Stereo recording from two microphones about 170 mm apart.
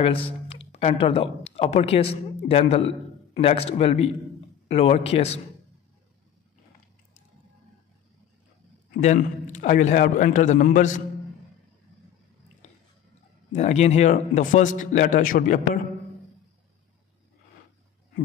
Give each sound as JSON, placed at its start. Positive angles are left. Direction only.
{"t": 0.5, "sound": "a man's voice", "side_deg": 35}
{"t": 9.0, "sound": "a man's voice", "side_deg": 45}
{"t": 13.5, "sound": "a man's voice", "side_deg": 40}